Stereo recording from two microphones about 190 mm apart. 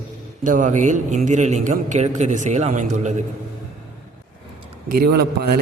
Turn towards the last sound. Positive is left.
turn(degrees=-55)  # may be behind; listen again after turning